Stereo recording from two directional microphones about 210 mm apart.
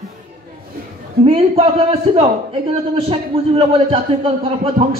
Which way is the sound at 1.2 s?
30° right (ahead or behind).